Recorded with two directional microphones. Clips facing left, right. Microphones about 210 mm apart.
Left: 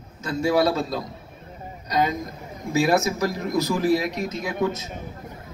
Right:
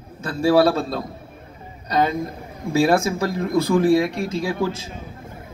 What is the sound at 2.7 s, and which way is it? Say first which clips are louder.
Speech: right 3 dB; 30° right (ahead or behind).